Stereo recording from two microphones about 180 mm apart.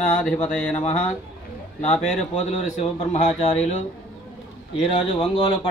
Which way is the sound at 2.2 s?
40° left (ahead or behind).